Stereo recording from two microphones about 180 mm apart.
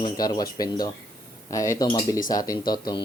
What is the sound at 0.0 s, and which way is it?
Speech, 20° left (ahead or behind).